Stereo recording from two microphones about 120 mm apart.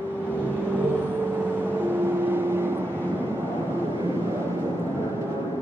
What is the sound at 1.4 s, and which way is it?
Vehicle, 15° right (ahead or behind).